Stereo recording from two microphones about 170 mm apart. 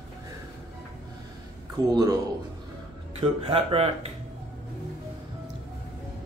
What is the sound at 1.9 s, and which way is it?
Speech, 20° right (ahead or behind).